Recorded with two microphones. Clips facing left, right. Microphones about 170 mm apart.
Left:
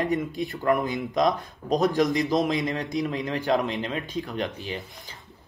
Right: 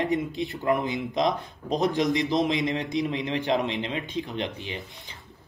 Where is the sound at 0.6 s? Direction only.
50° left (ahead or behind).